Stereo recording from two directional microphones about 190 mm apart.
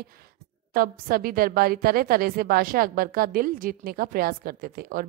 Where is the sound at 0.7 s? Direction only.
50° right (ahead or behind).